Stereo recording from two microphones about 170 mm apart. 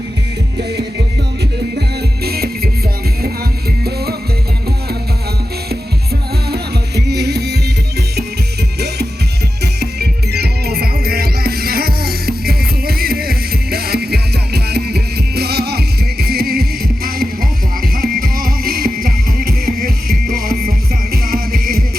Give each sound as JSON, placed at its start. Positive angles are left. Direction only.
{"t": 2.2, "sound": "music", "side_deg": -65}
{"t": 6.5, "sound": "music", "side_deg": -75}
{"t": 9.8, "sound": "music", "side_deg": -70}